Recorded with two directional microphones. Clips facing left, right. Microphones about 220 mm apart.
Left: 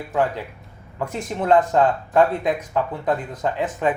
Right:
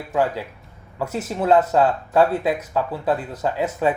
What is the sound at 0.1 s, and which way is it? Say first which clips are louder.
Speech: right 1 dB; 10° right (ahead or behind).